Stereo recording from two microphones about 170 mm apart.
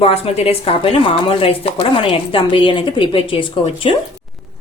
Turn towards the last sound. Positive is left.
turn(degrees=30)  # may be behind; listen again after turning